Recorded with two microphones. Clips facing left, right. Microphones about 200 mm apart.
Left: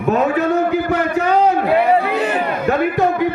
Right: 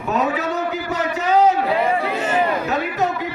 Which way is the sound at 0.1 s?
55° left (ahead or behind).